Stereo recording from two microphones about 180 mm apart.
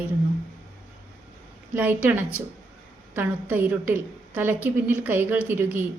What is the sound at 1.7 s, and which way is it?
A woman's voice, 10° right (ahead or behind).